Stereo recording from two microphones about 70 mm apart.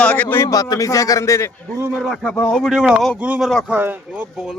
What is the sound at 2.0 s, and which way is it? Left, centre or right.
Speech, centre.